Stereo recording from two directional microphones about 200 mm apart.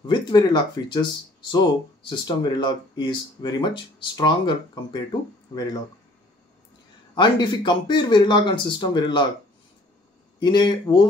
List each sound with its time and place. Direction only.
0.0 s speech: 20° left (ahead or behind)
7.2 s speech: 20° left (ahead or behind)
10.4 s speech: 20° left (ahead or behind)